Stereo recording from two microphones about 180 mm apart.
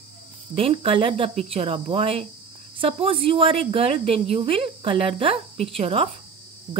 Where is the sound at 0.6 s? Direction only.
30° right (ahead or behind).